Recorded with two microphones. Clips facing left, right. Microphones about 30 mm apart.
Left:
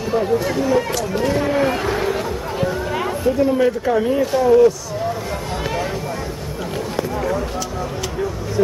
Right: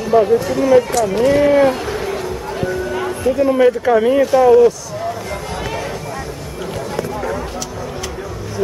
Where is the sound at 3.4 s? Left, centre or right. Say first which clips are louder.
Right 4 dB; centre.